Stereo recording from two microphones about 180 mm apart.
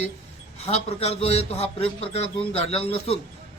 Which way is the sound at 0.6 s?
35° left (ahead or behind).